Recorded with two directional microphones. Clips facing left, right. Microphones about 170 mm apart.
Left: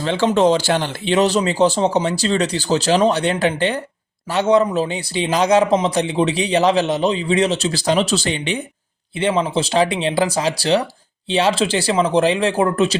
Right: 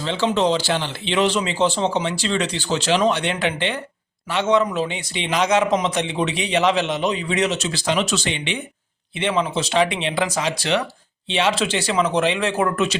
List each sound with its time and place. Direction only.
0.0 s a man's voice: 50° left (ahead or behind); by 13.0 s 35° left (ahead or behind)